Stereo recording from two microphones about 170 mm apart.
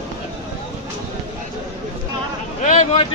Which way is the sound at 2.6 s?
45° left (ahead or behind).